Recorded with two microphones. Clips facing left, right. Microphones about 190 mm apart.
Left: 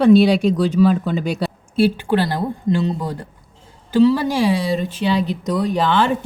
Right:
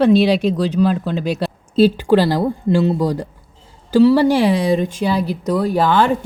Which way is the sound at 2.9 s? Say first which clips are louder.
Right 7 dB; 10° right (ahead or behind).